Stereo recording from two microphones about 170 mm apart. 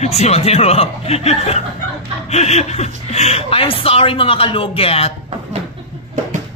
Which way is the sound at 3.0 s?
40° left (ahead or behind).